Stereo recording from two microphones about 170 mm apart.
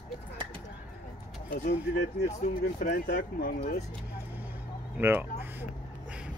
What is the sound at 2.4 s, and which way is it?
Speech, 40° left (ahead or behind).